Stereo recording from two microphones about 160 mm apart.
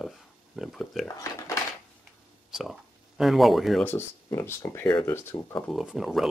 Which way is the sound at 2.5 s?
Centre (ahead or behind).